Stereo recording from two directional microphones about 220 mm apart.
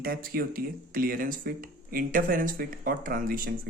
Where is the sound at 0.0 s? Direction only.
40° right (ahead or behind).